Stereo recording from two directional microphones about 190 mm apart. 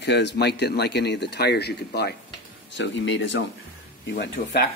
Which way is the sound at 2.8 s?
70° left (ahead or behind).